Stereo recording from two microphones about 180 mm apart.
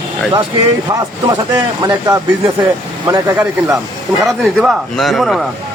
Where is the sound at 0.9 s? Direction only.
20° right (ahead or behind).